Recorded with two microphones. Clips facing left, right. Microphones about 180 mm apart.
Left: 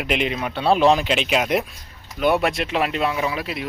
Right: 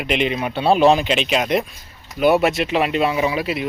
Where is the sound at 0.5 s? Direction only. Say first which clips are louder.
Right 2 dB; 25° right (ahead or behind).